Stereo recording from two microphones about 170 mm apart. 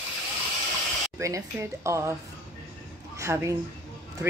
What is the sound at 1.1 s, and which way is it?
Speech, 15° right (ahead or behind).